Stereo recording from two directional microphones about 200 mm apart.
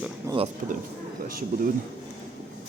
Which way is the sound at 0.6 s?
40° right (ahead or behind).